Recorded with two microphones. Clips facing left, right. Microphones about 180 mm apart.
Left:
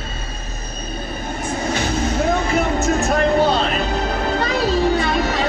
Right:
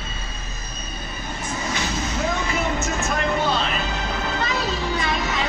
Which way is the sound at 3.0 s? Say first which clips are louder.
Left 8 dB; 35° left (ahead or behind).